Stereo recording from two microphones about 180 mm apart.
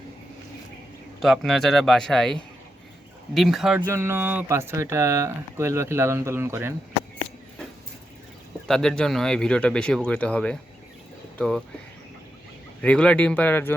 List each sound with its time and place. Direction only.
1.2 s speech: centre (ahead or behind)
8.6 s speech: centre (ahead or behind)
12.8 s speech: 5° left (ahead or behind)